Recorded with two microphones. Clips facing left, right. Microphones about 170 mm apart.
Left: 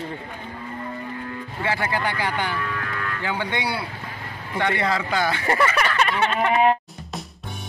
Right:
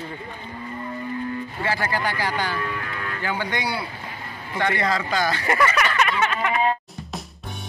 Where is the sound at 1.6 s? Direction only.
20° left (ahead or behind).